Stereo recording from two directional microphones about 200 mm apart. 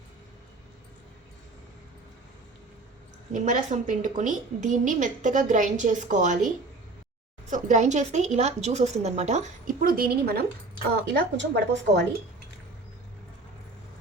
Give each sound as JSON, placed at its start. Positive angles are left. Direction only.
{"t": 3.3, "sound": "a woman's voice", "side_deg": -40}
{"t": 7.5, "sound": "a woman's voice", "side_deg": -35}